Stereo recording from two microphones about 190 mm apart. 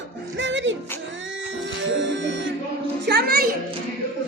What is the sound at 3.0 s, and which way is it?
Music, 60° right (ahead or behind).